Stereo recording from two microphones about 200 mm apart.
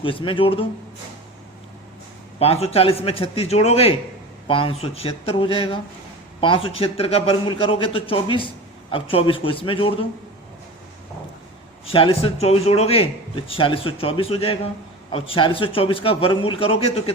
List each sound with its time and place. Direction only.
0.0 s speech: 25° left (ahead or behind)
2.4 s speech: 30° left (ahead or behind)
11.9 s speech: 30° left (ahead or behind)